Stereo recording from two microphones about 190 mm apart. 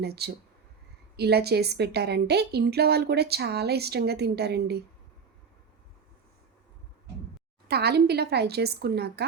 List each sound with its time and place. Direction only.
0.0 s a woman's voice: 60° right (ahead or behind)
7.7 s a woman's voice: 60° right (ahead or behind)